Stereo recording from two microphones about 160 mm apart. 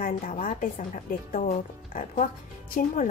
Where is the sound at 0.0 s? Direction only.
55° left (ahead or behind).